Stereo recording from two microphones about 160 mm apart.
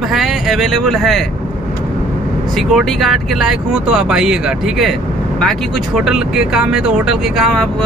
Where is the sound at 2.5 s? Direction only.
Centre (ahead or behind).